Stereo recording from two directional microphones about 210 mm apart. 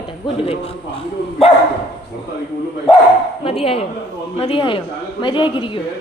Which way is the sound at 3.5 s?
25° left (ahead or behind).